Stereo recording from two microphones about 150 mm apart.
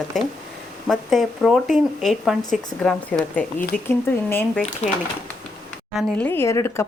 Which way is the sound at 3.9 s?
15° left (ahead or behind).